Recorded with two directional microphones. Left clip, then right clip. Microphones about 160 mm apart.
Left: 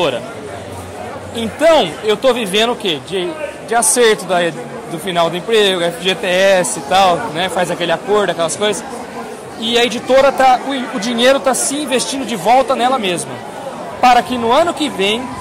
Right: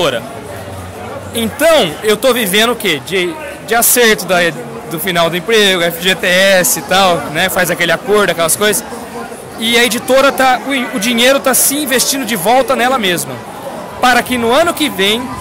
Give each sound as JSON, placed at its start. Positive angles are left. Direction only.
{"t": 1.3, "sound": "a man's voice", "side_deg": -15}